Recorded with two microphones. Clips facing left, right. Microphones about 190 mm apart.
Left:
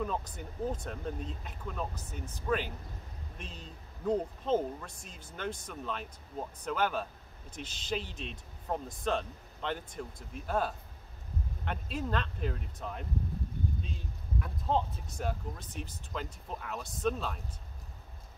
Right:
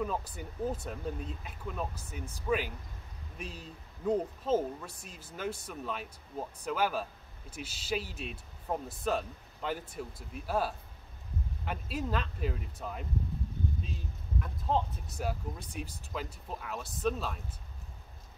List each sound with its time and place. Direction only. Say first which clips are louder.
0.0 s speech: right 1 dB; 5° right (ahead or behind)